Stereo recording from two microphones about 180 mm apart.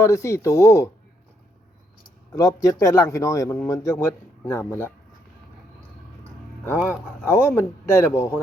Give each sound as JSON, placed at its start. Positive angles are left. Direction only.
{"t": 0.0, "sound": "speech", "side_deg": 15}
{"t": 2.3, "sound": "speech", "side_deg": 20}
{"t": 7.3, "sound": "speech", "side_deg": 15}